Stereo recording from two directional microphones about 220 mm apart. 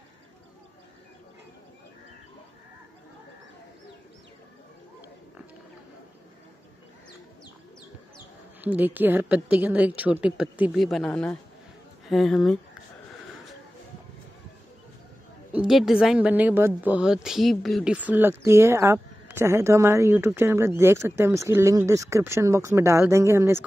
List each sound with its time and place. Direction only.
8.5 s speech: 10° right (ahead or behind)
15.5 s speech: centre (ahead or behind)